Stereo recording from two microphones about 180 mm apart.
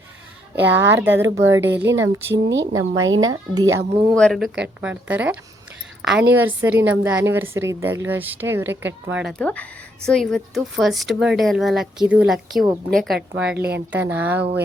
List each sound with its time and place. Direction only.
0.6 s speech: 10° right (ahead or behind)
1.7 s speech: 80° right
2.7 s speech: 20° right (ahead or behind)
4.1 s a woman's voice: 5° left (ahead or behind)
9.2 s a woman's voice: 5° left (ahead or behind); by 14.4 s 10° right (ahead or behind)